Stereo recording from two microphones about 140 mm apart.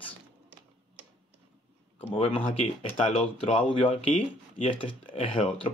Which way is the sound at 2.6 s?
55° left (ahead or behind).